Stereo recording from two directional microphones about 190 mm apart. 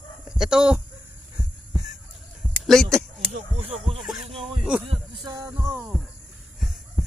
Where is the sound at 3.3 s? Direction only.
35° right (ahead or behind).